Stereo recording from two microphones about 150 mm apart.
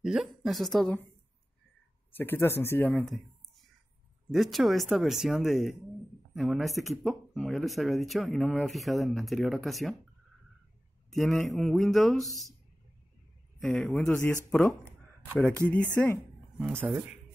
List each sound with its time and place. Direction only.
0.0 s speech: 5° right (ahead or behind)
2.1 s speech: 15° left (ahead or behind)
4.3 s speech: centre (ahead or behind)
11.1 s speech: centre (ahead or behind)
13.7 s speech: 5° left (ahead or behind)